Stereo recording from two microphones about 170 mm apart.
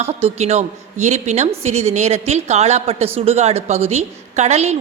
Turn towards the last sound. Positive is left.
turn(degrees=-40)  # may be behind; listen again after turning